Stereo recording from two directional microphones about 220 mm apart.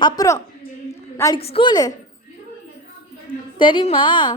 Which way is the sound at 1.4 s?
25° left (ahead or behind).